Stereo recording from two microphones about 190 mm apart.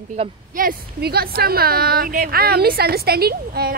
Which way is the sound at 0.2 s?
30° right (ahead or behind).